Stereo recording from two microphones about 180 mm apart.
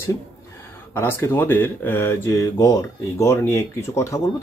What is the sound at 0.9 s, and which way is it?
Speech, 15° left (ahead or behind).